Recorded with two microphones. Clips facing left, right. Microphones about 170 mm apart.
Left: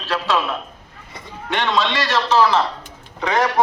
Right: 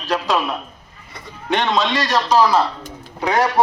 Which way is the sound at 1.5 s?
20° right (ahead or behind).